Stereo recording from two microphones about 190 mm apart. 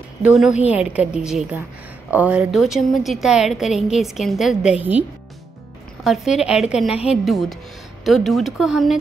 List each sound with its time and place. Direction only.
0.2 s a woman's voice: centre (ahead or behind)
0.5 s a woman's voice: 35° left (ahead or behind)
0.7 s a woman's voice: 5° right (ahead or behind)
6.0 s a woman's voice: centre (ahead or behind)